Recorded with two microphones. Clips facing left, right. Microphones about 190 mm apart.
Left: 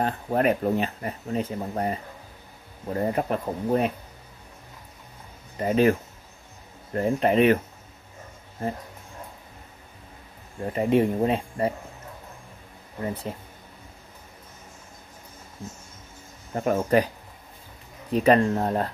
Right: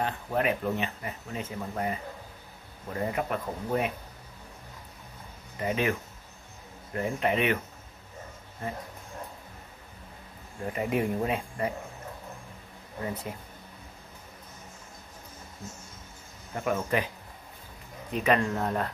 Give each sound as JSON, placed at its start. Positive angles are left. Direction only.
{"t": 0.0, "sound": "speech", "side_deg": 40}
{"t": 5.6, "sound": "speech", "side_deg": 40}
{"t": 10.7, "sound": "speech", "side_deg": 30}
{"t": 13.0, "sound": "speech", "side_deg": 30}
{"t": 16.5, "sound": "speech", "side_deg": 35}
{"t": 18.1, "sound": "speech", "side_deg": 35}